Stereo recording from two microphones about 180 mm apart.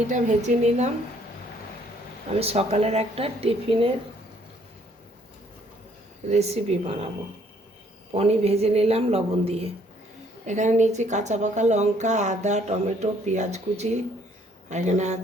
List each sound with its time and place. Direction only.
0.1 s a woman's voice: 40° right (ahead or behind)
2.4 s a woman's voice: 35° right (ahead or behind)
6.2 s a woman's voice: 40° right (ahead or behind)
8.1 s a woman's voice: 35° right (ahead or behind)